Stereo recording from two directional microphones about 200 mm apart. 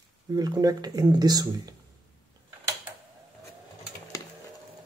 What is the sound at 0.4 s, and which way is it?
Speech, 20° right (ahead or behind).